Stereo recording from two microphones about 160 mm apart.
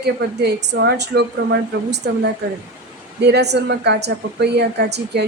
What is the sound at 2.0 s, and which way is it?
Speech, 75° right (ahead or behind).